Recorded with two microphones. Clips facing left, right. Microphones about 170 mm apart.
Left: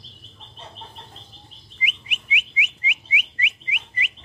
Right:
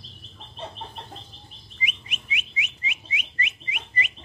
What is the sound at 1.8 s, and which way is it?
Bird, 10° left (ahead or behind).